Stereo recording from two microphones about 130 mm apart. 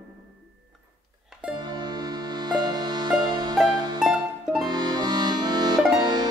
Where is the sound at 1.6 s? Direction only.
35° right (ahead or behind).